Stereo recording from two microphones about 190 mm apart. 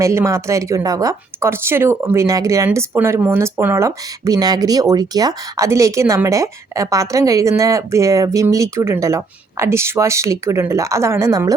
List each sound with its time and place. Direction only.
0.0 s a woman's voice: 15° right (ahead or behind)